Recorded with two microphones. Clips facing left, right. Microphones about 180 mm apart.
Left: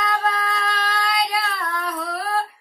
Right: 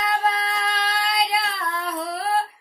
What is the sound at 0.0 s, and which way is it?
Child singing, 25° right (ahead or behind).